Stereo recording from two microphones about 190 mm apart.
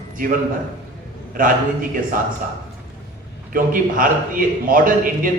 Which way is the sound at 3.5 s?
45° right (ahead or behind).